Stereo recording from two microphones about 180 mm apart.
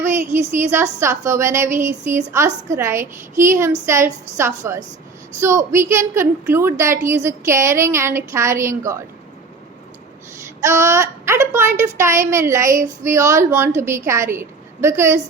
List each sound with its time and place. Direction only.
0.0 s a woman's voice: 15° right (ahead or behind)
10.6 s a woman's voice: 15° right (ahead or behind)